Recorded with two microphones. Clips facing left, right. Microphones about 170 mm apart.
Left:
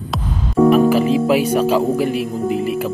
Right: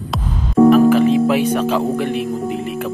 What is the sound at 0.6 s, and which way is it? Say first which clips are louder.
Speech: right 2 dB; 5° left (ahead or behind).